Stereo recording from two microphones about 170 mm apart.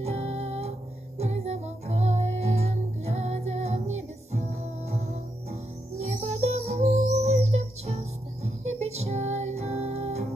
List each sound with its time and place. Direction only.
0.0 s music: 40° right (ahead or behind)
6.0 s music: 40° right (ahead or behind)